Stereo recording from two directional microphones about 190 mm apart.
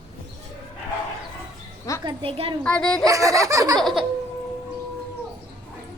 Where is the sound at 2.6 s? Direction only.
5° left (ahead or behind).